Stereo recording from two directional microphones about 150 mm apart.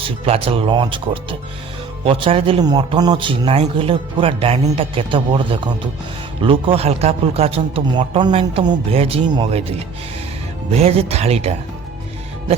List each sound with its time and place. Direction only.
0.0 s a man's voice: 40° right (ahead or behind)